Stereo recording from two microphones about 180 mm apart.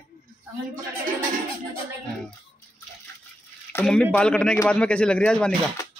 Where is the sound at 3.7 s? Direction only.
10° left (ahead or behind).